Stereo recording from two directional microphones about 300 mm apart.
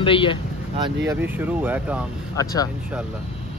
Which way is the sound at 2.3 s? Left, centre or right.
Centre.